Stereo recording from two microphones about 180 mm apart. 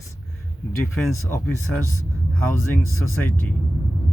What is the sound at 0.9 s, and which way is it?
Speech, 5° left (ahead or behind).